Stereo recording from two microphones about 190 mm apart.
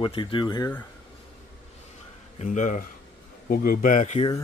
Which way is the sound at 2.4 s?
40° left (ahead or behind).